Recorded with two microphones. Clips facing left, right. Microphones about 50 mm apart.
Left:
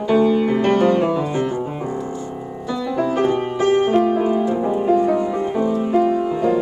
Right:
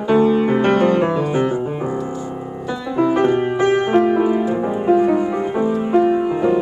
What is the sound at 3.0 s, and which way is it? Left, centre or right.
Music, right.